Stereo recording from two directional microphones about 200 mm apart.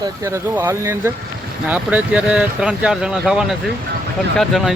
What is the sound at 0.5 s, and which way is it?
Speech, 10° right (ahead or behind).